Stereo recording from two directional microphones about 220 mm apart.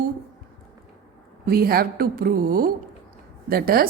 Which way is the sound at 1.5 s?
45° right (ahead or behind).